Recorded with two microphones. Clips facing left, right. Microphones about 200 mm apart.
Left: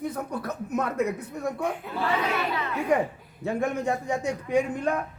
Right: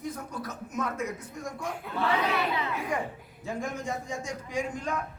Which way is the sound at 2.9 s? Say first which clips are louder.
Left 8 dB; 65° left (ahead or behind).